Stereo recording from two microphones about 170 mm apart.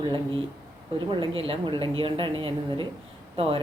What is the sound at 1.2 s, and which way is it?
A woman's voice, 30° right (ahead or behind).